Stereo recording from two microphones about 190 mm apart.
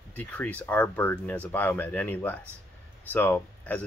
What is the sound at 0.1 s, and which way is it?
Speech, 10° left (ahead or behind).